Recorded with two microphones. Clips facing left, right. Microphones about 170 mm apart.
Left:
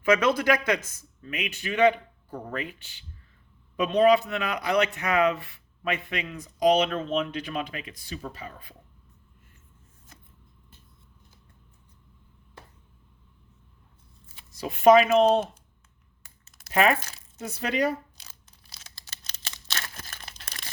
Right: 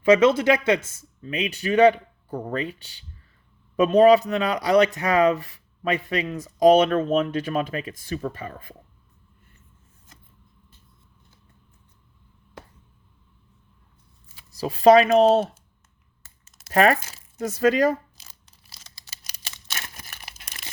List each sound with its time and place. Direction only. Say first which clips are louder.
0.0 s speech: right 6 dB; 25° right (ahead or behind); by 8.7 s 50° right (ahead or behind)
14.5 s speech: right 3 dB; 35° right (ahead or behind)
16.7 s speech: right 4 dB; 40° right (ahead or behind)
18.2 s a sound: even; centre (ahead or behind)
19.2 s crumpling: left 1 dB; 10° right (ahead or behind)